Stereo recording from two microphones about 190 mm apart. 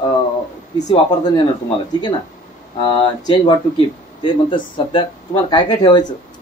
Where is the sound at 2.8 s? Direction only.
25° left (ahead or behind).